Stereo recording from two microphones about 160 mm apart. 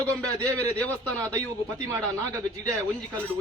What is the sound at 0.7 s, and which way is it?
Speech, 10° left (ahead or behind).